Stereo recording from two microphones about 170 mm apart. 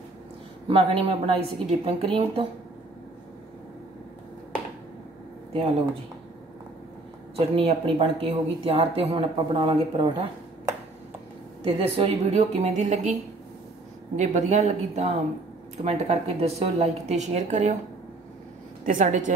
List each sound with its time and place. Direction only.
0.7 s speech: 30° right (ahead or behind)
7.3 s speech: 35° right (ahead or behind)
14.1 s speech: 45° right (ahead or behind)
18.9 s a woman's voice: 50° right (ahead or behind)